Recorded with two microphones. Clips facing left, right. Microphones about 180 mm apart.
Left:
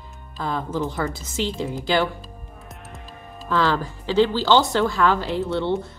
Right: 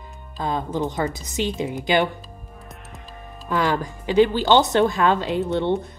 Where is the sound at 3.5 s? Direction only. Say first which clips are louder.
Even; 15° right (ahead or behind).